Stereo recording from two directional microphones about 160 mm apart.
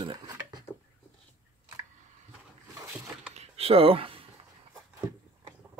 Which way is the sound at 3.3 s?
40° right (ahead or behind).